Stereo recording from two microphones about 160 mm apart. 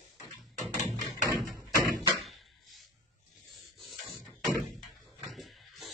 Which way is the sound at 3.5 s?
Centre (ahead or behind).